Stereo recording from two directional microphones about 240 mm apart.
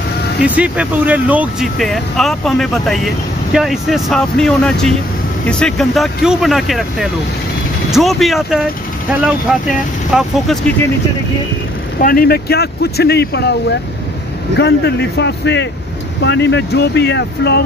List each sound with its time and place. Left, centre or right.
0.4 s speech: centre
12.0 s speech: left